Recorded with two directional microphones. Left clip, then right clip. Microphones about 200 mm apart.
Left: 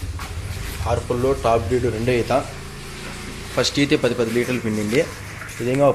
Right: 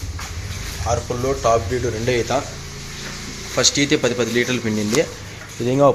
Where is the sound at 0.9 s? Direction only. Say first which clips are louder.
Left 1 dB; 5° left (ahead or behind).